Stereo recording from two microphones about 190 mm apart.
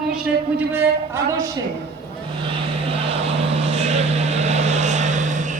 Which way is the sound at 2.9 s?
30° right (ahead or behind).